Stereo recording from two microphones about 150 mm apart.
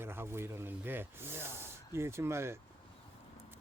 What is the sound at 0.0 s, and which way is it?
Speech, 15° right (ahead or behind).